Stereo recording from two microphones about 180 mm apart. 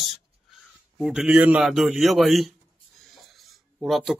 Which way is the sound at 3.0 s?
Centre (ahead or behind).